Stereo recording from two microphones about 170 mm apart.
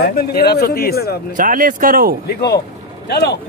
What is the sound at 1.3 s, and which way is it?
Speech, 50° right (ahead or behind).